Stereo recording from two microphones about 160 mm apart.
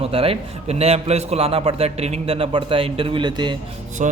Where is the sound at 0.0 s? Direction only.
35° right (ahead or behind).